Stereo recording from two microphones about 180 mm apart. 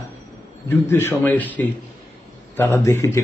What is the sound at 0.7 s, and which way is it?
Speech, 15° left (ahead or behind).